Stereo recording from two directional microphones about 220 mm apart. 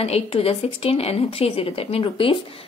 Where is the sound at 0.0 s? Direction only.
25° left (ahead or behind).